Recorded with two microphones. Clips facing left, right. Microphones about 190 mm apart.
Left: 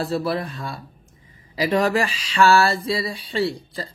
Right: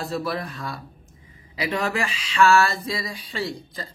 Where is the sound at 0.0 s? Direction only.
30° left (ahead or behind).